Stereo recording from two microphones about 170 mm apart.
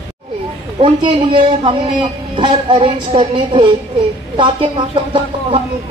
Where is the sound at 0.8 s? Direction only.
30° right (ahead or behind).